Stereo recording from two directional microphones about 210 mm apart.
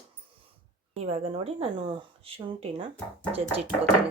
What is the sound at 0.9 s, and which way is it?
Speech, 30° right (ahead or behind).